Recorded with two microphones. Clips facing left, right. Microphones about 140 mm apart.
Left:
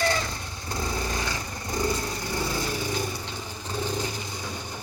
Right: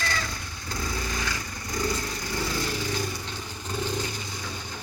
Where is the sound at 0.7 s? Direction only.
25° left (ahead or behind).